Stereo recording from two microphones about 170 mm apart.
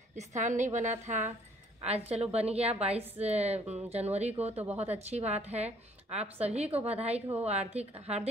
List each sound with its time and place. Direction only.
0.1 s a woman's voice: 45° right (ahead or behind)